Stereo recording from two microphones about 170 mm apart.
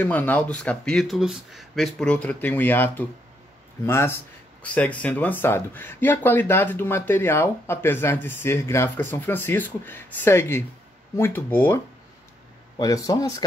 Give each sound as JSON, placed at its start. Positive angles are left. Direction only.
{"t": 0.0, "sound": "speech", "side_deg": 10}